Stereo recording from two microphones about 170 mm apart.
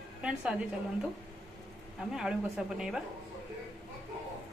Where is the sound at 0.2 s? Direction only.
5° right (ahead or behind).